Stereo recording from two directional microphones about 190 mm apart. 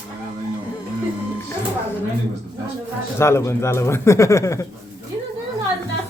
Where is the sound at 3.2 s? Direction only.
15° left (ahead or behind).